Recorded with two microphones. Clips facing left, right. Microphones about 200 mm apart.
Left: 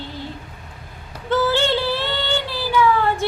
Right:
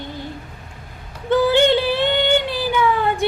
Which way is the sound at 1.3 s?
15° right (ahead or behind).